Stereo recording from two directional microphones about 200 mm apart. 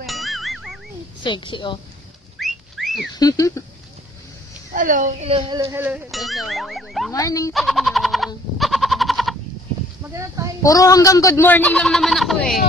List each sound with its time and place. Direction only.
0.0 s music: centre (ahead or behind)
1.2 s a woman's voice: 25° left (ahead or behind)
2.4 s whistling: centre (ahead or behind)
3.2 s a man's voice: 20° left (ahead or behind)
4.7 s a woman's voice: 40° right (ahead or behind)
5.7 s speech: 10° right (ahead or behind)
7.1 s a man's voice: 15° left (ahead or behind)
7.5 s a sound: centre (ahead or behind)
10.0 s speech: 15° right (ahead or behind)
10.6 s a man's voice: 15° left (ahead or behind); by 12.5 s centre (ahead or behind)